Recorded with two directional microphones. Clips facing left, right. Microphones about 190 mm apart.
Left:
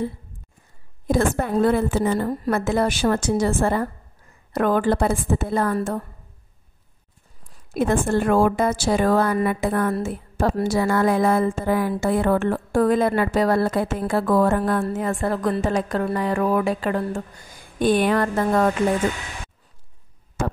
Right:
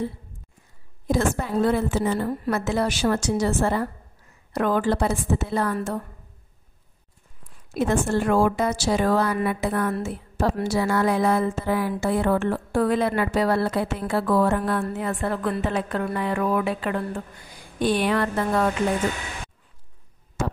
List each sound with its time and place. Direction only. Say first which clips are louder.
1.0 s a woman's voice: left 3 dB; 55° left (ahead or behind)
7.7 s speech: left 2 dB; 55° left (ahead or behind)
20.4 s a woman's voice: left 2 dB; 55° left (ahead or behind)